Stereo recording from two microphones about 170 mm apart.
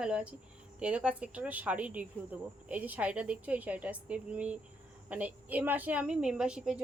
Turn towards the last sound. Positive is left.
turn(degrees=-5)  # may be behind; listen again after turning